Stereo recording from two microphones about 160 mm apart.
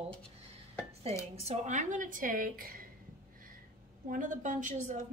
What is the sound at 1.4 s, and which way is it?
A woman's voice, 50° right (ahead or behind).